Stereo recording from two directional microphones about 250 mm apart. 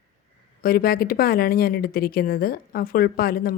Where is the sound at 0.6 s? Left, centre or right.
Left.